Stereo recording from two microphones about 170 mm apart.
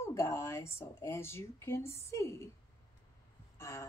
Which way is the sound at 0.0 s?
15° left (ahead or behind).